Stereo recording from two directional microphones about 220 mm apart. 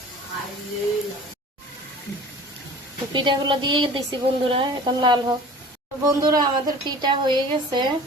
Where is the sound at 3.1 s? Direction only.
20° right (ahead or behind).